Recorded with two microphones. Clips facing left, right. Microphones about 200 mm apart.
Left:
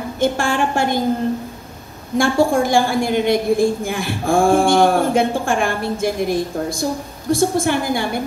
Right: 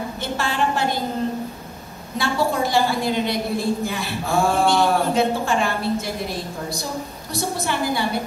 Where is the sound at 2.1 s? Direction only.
50° left (ahead or behind).